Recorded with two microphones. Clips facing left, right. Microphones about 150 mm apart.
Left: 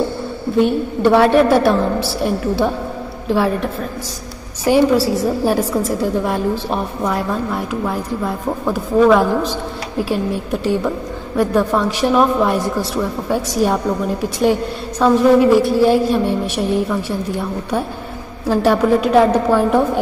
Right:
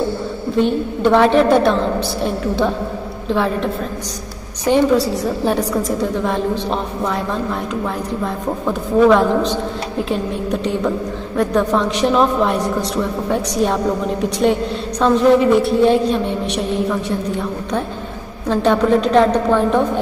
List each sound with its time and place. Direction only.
0.6 s a woman's voice: 5° left (ahead or behind)
18.5 s a woman's voice: 5° left (ahead or behind)